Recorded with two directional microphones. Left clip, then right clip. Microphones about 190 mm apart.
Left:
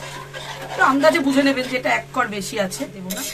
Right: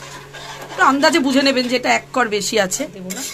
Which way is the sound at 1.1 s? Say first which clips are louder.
Right 3 dB; 50° right (ahead or behind).